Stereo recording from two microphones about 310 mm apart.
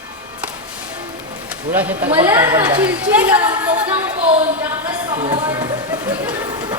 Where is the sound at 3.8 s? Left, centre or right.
Centre.